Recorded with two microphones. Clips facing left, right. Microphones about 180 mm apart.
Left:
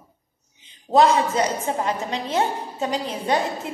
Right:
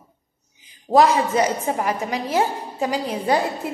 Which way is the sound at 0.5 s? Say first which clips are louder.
Right 2 dB; 25° left (ahead or behind).